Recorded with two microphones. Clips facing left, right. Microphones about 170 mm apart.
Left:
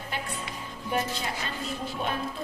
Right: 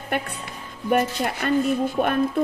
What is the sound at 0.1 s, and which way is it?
A woman's voice, 60° right (ahead or behind).